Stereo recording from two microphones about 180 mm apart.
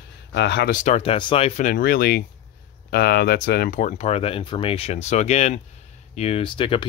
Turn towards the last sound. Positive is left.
turn(degrees=30)  # may be behind; listen again after turning